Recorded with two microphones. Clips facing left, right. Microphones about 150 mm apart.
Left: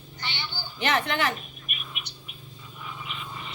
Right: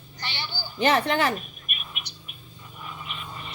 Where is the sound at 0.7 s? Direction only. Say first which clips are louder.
Right 4 dB; 35° right (ahead or behind).